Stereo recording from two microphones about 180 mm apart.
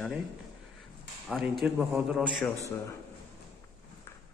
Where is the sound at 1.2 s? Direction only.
Centre (ahead or behind).